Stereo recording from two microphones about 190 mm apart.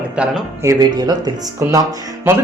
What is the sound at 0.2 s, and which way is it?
Speech, 15° right (ahead or behind).